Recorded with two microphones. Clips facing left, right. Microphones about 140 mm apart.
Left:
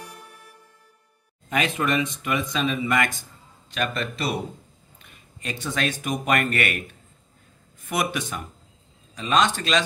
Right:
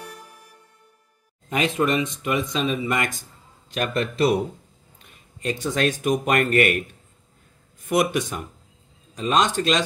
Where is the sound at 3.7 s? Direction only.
45° right (ahead or behind).